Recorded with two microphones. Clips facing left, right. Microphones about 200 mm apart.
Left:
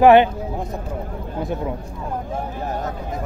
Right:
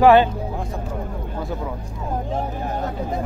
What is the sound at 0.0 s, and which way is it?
Speech, 20° left (ahead or behind).